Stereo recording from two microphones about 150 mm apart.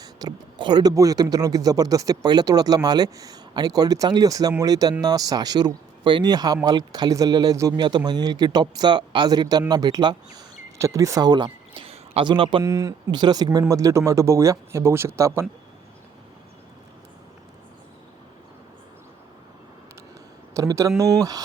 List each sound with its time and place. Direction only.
0.0 s speech: 25° right (ahead or behind)
12.6 s speech: 20° right (ahead or behind)
20.5 s speech: 20° right (ahead or behind)